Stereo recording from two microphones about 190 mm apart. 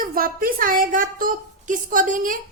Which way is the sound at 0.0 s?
50° right (ahead or behind).